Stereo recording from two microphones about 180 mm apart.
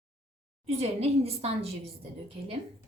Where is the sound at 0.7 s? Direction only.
35° right (ahead or behind).